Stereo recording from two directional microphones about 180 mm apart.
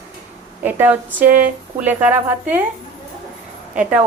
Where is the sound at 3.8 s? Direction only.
5° right (ahead or behind).